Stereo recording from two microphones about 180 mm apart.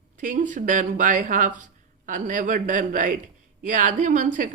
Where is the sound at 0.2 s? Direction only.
45° right (ahead or behind).